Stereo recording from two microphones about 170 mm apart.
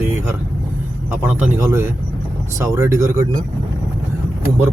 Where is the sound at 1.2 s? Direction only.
15° right (ahead or behind).